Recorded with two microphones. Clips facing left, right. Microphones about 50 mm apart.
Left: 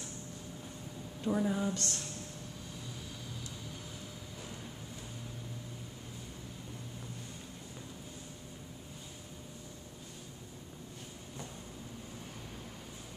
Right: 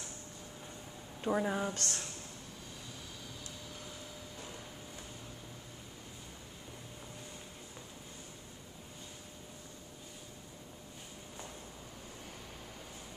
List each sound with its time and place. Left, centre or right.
1.2 s speech: right
1.7 s speech: right